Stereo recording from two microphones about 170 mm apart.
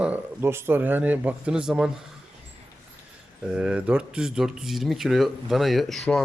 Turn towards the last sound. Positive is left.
turn(degrees=0)  # may be behind; listen again after turning